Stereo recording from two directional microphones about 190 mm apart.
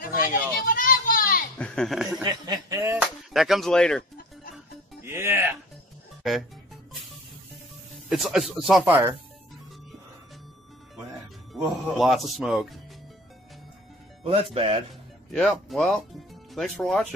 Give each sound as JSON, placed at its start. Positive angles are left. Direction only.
{"t": 0.2, "sound": "children playing", "side_deg": 45}
{"t": 1.6, "sound": "speech", "side_deg": 0}
{"t": 2.2, "sound": "a sound", "side_deg": -20}
{"t": 3.3, "sound": "speech", "side_deg": 0}
{"t": 5.0, "sound": "music", "side_deg": -10}
{"t": 8.1, "sound": "speech", "side_deg": 0}
{"t": 11.5, "sound": "speech", "side_deg": 0}
{"t": 14.2, "sound": "speech", "side_deg": -30}
{"t": 15.3, "sound": "speech", "side_deg": 5}